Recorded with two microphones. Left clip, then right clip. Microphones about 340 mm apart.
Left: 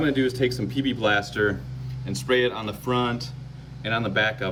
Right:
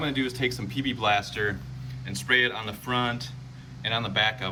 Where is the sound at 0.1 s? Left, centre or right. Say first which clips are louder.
Left 5 dB; centre.